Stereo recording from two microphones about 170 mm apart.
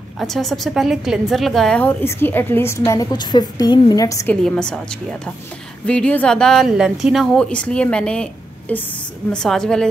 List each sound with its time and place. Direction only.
0.2 s a woman's voice: centre (ahead or behind); by 4.3 s 20° left (ahead or behind)
4.3 s a woman's voice: 5° left (ahead or behind)